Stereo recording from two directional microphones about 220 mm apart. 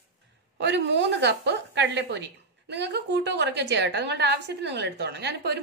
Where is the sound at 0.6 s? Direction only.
50° right (ahead or behind).